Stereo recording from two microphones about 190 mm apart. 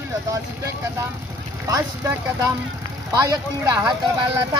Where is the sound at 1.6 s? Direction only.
15° right (ahead or behind).